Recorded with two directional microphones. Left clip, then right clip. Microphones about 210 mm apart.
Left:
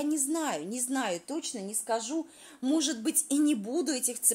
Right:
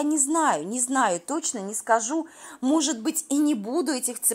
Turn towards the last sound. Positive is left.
turn(degrees=-20)  # may be behind; listen again after turning